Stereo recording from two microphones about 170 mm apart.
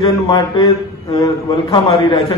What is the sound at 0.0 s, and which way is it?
A man's voice, 25° left (ahead or behind).